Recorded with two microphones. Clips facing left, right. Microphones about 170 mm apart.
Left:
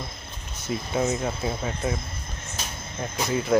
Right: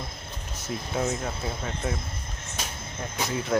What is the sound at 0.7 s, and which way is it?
Speech, 5° left (ahead or behind).